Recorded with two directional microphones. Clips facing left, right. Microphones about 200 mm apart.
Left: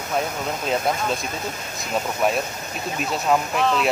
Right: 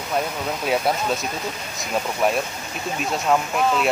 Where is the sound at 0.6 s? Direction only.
5° right (ahead or behind).